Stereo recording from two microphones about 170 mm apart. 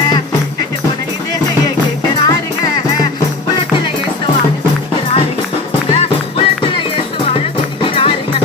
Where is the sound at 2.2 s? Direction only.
20° left (ahead or behind).